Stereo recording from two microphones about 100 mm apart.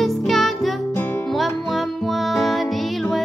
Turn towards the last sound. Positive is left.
turn(degrees=0)  # may be behind; listen again after turning